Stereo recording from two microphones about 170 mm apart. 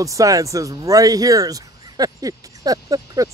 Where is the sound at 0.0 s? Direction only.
20° right (ahead or behind).